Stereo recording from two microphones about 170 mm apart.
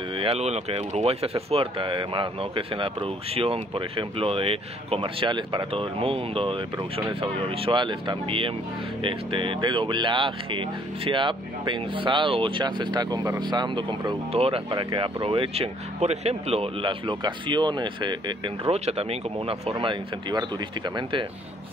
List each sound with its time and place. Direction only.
0.2 s speech: 40° right (ahead or behind)
18.7 s speech: 35° right (ahead or behind)